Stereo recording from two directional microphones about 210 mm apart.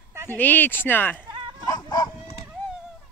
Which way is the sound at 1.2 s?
25° right (ahead or behind).